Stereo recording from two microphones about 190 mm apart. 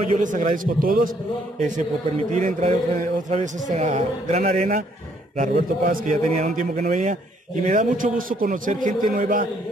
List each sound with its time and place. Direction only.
0.2 s a man's voice: 45° right (ahead or behind)
2.3 s a man's voice: 40° right (ahead or behind)